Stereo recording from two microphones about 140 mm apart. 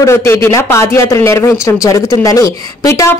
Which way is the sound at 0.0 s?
20° left (ahead or behind).